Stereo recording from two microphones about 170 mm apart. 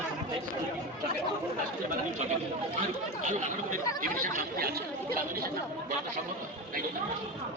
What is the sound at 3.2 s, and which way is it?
Speech, 50° right (ahead or behind).